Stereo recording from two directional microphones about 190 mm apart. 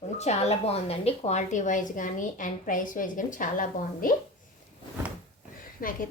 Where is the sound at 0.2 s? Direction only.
35° left (ahead or behind).